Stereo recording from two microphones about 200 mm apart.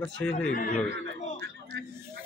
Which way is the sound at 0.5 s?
40° left (ahead or behind).